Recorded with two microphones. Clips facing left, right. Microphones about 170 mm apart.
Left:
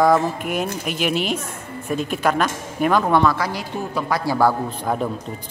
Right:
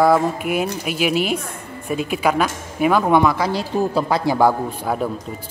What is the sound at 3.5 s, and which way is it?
A man's voice, 30° right (ahead or behind).